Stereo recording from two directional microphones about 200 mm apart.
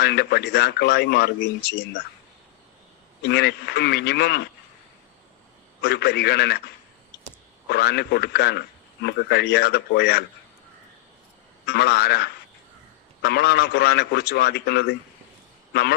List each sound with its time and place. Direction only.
0.0 s a man's voice: 55° left (ahead or behind)
3.2 s a man's voice: 55° left (ahead or behind)
5.8 s a man's voice: 55° left (ahead or behind)
7.7 s a man's voice: 55° left (ahead or behind)
11.6 s a man's voice: 55° left (ahead or behind)